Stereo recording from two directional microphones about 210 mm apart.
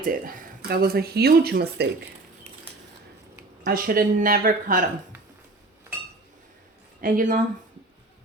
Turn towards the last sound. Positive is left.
turn(degrees=-40)  # may be behind; listen again after turning